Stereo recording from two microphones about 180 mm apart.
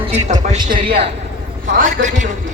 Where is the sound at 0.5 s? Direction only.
25° right (ahead or behind).